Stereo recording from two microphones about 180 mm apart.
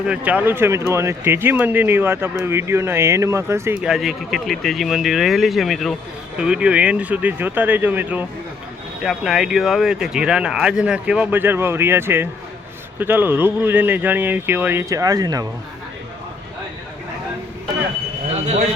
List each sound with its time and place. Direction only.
0.1 s speech: 5° right (ahead or behind)